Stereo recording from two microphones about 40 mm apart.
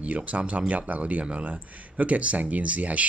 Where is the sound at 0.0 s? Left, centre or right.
Right.